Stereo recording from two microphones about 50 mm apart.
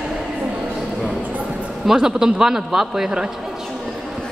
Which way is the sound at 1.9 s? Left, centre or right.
Centre.